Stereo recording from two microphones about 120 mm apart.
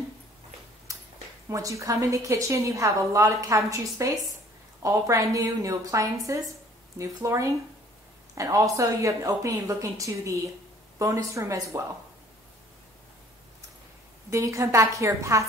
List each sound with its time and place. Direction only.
1.5 s a woman's voice: 25° right (ahead or behind)
14.3 s a woman's voice: 25° right (ahead or behind)